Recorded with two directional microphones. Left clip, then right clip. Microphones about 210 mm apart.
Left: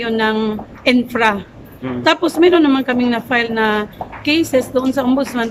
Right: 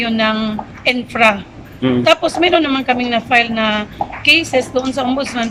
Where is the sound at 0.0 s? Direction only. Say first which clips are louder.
Even; 15° left (ahead or behind).